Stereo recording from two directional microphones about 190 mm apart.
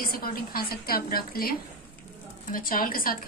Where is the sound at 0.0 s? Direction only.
50° left (ahead or behind).